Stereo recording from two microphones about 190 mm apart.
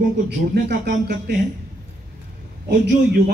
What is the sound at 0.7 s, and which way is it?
Speech, 55° right (ahead or behind).